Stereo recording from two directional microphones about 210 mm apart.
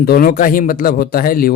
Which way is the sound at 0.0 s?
45° left (ahead or behind).